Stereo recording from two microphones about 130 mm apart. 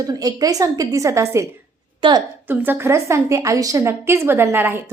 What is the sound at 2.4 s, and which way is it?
A woman's voice, 15° right (ahead or behind).